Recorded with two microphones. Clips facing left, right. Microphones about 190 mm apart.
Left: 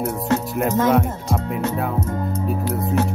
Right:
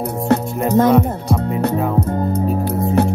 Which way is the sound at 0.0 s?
35° right (ahead or behind).